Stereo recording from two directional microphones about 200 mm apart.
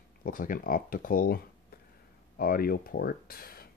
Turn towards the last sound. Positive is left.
turn(degrees=45)  # may be behind; listen again after turning